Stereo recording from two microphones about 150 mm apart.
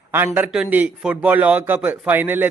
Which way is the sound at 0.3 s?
10° right (ahead or behind).